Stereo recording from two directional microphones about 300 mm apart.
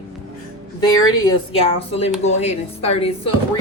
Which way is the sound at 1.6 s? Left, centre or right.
Centre.